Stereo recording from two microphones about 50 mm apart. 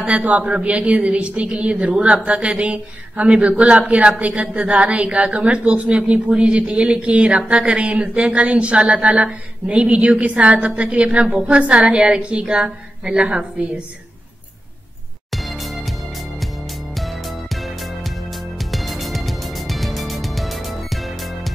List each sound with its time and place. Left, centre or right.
0.0 s a woman's voice: right
15.3 s music: centre